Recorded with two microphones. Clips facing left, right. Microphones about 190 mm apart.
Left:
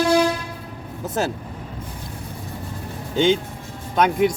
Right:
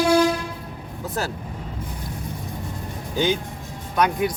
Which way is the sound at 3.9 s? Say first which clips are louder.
Left 3 dB; 25° left (ahead or behind).